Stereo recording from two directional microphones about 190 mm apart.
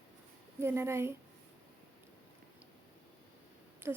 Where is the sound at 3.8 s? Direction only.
10° right (ahead or behind).